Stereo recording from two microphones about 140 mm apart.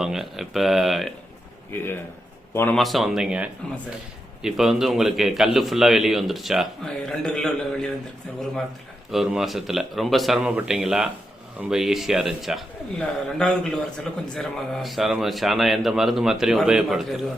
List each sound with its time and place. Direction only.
0.0 s a man's voice: centre (ahead or behind)
2.5 s a man's voice: 15° left (ahead or behind)
2.7 s a man's voice: centre (ahead or behind)
9.1 s a man's voice: centre (ahead or behind)